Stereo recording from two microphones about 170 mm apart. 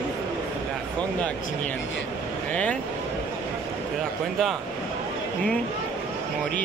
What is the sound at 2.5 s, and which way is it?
Speech, 10° left (ahead or behind).